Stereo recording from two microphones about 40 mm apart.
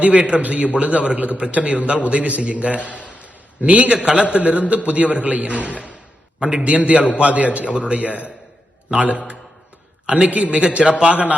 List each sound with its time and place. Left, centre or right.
0.0 s a man's voice: right
10.2 s a man's voice: right
11.1 s a man's voice: right